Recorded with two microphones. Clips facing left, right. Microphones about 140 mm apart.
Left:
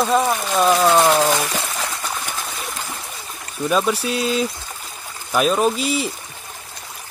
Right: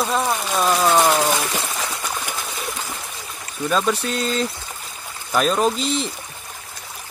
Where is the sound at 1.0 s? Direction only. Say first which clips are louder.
Left 2 dB; 10° left (ahead or behind).